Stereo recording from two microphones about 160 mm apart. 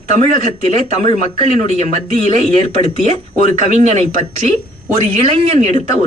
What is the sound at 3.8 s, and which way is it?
Speech, 45° right (ahead or behind).